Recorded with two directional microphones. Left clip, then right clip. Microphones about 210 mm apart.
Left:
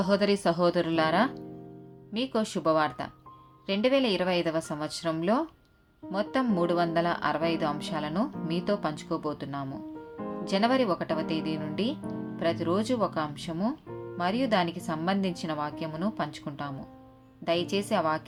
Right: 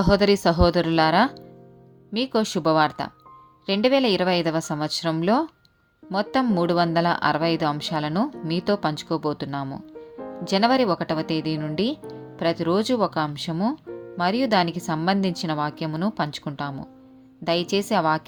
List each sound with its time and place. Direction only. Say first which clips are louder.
0.0 s a woman's voice: right 6 dB; 40° right (ahead or behind)